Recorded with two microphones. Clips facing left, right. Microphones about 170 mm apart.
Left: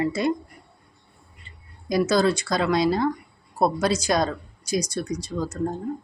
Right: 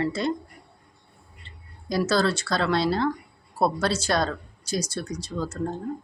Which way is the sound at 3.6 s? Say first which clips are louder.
Left 2 dB; 15° left (ahead or behind).